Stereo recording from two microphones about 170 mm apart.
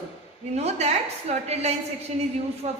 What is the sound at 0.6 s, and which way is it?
A woman's voice, 40° right (ahead or behind).